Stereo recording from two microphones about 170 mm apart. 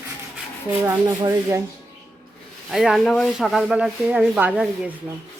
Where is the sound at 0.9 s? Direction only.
15° right (ahead or behind).